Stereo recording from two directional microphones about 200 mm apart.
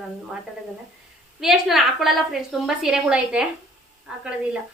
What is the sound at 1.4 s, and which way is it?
A woman's voice, centre (ahead or behind).